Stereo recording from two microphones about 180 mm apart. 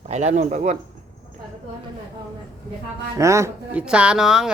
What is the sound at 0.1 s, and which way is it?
Speech, 40° right (ahead or behind).